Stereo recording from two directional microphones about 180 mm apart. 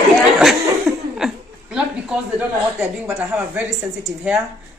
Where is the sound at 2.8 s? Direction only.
5° right (ahead or behind).